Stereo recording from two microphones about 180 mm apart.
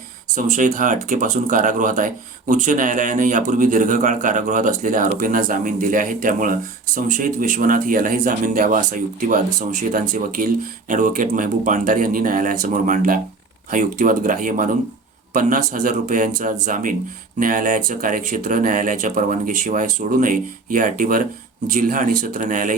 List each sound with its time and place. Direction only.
0.3 s speech: 45° right (ahead or behind)